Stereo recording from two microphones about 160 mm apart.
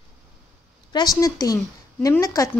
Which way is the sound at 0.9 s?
25° left (ahead or behind).